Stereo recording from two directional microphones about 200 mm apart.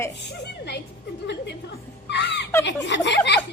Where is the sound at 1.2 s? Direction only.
55° left (ahead or behind).